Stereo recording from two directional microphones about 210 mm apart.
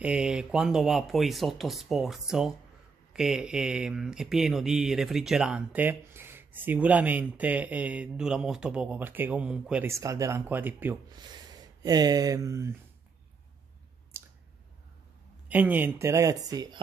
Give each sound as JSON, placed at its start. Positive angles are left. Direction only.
{"t": 0.0, "sound": "speech", "side_deg": -5}
{"t": 14.1, "sound": "squish", "side_deg": -10}
{"t": 15.4, "sound": "speech", "side_deg": -5}